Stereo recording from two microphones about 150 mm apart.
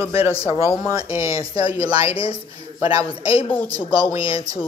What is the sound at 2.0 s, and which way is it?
Speech, 35° left (ahead or behind).